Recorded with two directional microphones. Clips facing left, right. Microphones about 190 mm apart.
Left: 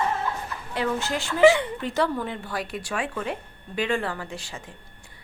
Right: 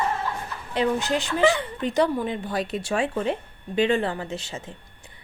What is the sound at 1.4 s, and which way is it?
Speech, 15° left (ahead or behind).